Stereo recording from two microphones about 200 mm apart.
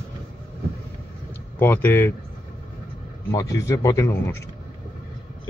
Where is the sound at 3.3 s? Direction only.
15° left (ahead or behind).